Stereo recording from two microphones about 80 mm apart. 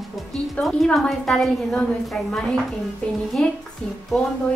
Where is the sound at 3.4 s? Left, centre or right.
Centre.